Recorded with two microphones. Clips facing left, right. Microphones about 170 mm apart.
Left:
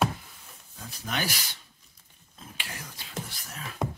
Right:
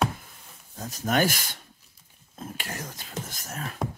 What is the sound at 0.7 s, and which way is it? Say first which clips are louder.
Speech: right 9 dB; 45° right (ahead or behind).